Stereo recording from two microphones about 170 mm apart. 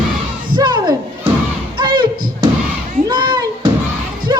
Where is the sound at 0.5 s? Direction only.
25° right (ahead or behind).